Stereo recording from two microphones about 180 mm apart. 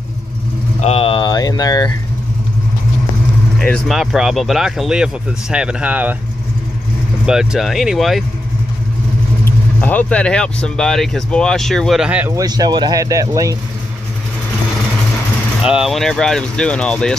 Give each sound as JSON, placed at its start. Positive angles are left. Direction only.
{"t": 0.7, "sound": "a sound", "side_deg": 35}
{"t": 3.5, "sound": "speech", "side_deg": 5}
{"t": 7.2, "sound": "speech", "side_deg": -5}
{"t": 9.4, "sound": "speech", "side_deg": 10}
{"t": 12.4, "sound": "speech", "side_deg": -20}
{"t": 15.6, "sound": "speech", "side_deg": -5}